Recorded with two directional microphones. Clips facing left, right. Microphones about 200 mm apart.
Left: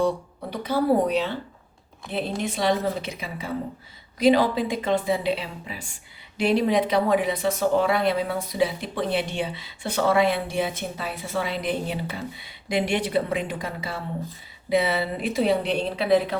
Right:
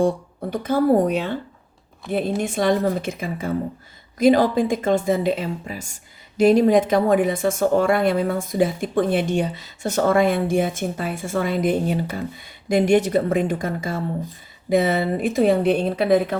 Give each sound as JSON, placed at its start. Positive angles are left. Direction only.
{"t": 0.5, "sound": "a woman's voice", "side_deg": -50}
{"t": 2.4, "sound": "a woman's voice", "side_deg": -50}